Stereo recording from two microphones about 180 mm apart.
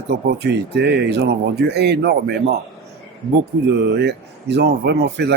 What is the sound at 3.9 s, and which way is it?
Speech, 70° right (ahead or behind).